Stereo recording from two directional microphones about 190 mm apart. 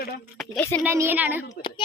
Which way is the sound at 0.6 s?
10° left (ahead or behind).